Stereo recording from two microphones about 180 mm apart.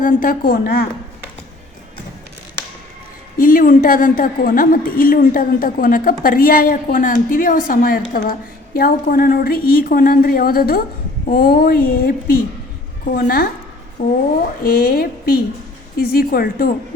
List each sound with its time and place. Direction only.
0.0 s a woman's voice: 50° left (ahead or behind)
3.3 s a woman's voice: 50° left (ahead or behind)